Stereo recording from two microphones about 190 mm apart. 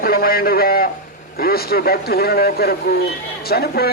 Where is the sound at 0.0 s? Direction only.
50° left (ahead or behind).